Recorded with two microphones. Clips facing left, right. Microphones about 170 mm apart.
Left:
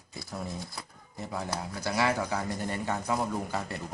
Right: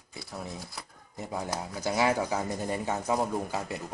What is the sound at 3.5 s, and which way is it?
Speech, 10° right (ahead or behind).